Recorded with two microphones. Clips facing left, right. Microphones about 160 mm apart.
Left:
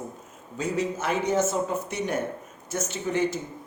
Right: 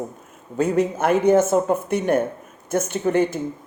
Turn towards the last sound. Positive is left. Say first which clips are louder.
# right 6 dB
turn(degrees=-55)  # may be behind; listen again after turning